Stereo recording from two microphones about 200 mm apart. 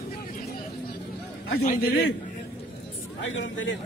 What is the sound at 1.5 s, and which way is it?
Speech, 45° left (ahead or behind).